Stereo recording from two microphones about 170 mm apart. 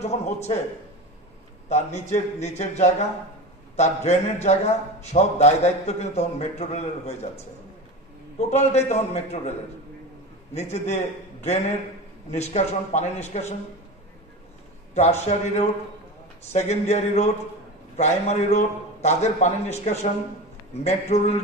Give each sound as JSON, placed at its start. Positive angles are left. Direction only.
{"t": 0.0, "sound": "a man's voice", "side_deg": 40}
{"t": 1.7, "sound": "a man's voice", "side_deg": 40}
{"t": 10.5, "sound": "a man's voice", "side_deg": 40}
{"t": 12.3, "sound": "a man's voice", "side_deg": 40}
{"t": 15.0, "sound": "a man's voice", "side_deg": 40}